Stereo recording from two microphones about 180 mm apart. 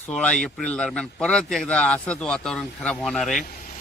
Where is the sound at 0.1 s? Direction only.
5° left (ahead or behind).